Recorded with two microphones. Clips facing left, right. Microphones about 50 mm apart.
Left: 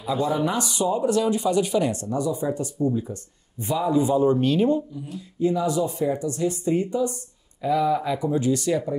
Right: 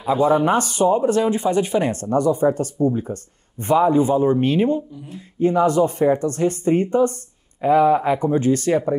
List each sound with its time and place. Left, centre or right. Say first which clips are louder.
0.0 s speech: right 7 dB; right
5.4 s speech: right 6 dB; right